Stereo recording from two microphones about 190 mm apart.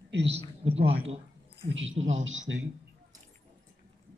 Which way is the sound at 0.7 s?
30° right (ahead or behind).